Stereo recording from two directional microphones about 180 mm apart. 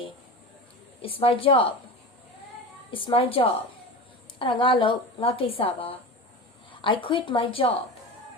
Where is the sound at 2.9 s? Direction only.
30° left (ahead or behind).